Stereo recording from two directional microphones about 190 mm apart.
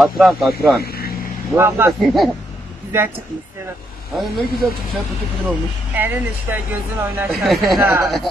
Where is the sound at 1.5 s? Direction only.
15° right (ahead or behind).